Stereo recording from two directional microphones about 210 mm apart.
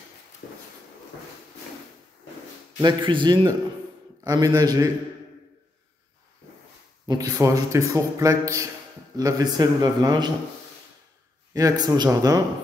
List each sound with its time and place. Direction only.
2.8 s a man's voice: 25° right (ahead or behind)
7.1 s a man's voice: 15° right (ahead or behind)
11.5 s a man's voice: 15° right (ahead or behind)